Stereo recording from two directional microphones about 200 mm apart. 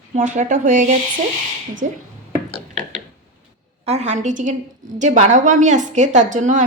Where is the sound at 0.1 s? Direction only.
35° right (ahead or behind).